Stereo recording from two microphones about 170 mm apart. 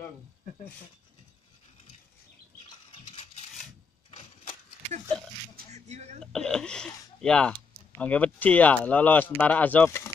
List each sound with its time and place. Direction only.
5.7 s a sound: 40° right (ahead or behind)
6.3 s throat clearing: 5° left (ahead or behind)
7.2 s speech: 5° left (ahead or behind)